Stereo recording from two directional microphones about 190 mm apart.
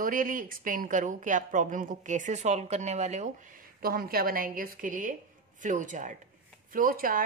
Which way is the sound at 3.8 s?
50° right (ahead or behind).